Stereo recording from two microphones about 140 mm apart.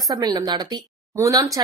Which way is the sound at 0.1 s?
25° right (ahead or behind).